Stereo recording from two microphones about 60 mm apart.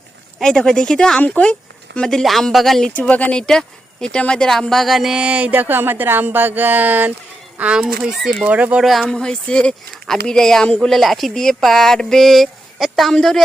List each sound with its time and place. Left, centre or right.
0.3 s speech: centre
2.9 s speech: left
3.4 s speech: centre
5.2 s speech: right
7.6 s speech: centre
8.4 s speech: right
8.8 s speech: centre
9.0 s speech: centre